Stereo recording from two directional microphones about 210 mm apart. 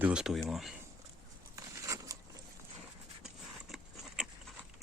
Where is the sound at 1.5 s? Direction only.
15° right (ahead or behind).